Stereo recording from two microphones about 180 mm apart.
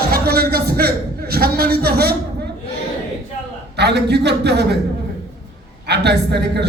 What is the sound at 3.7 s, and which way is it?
A woman's voice, 65° right (ahead or behind).